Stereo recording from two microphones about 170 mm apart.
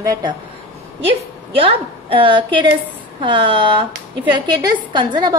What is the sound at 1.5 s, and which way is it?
A woman's voice, 30° right (ahead or behind).